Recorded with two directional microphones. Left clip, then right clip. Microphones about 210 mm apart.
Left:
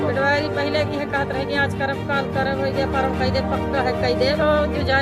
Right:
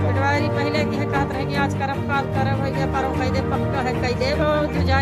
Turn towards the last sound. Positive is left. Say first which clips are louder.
# left 2 dB
turn(degrees=5)  # may be behind; listen again after turning